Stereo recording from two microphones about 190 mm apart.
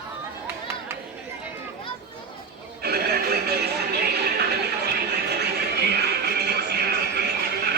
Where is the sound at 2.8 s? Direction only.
55° right (ahead or behind).